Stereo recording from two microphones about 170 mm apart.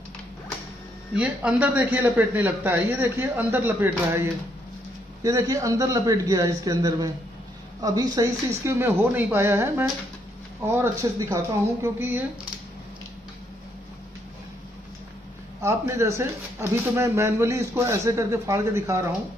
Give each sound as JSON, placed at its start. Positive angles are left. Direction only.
{"t": 1.1, "sound": "speech", "side_deg": -5}
{"t": 5.2, "sound": "a man's voice", "side_deg": -20}
{"t": 15.6, "sound": "speech", "side_deg": -15}